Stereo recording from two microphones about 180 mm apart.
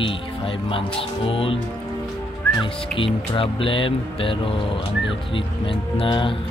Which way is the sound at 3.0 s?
30° left (ahead or behind).